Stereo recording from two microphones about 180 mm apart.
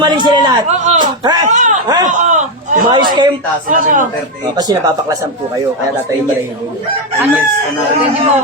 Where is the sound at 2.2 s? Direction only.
45° right (ahead or behind).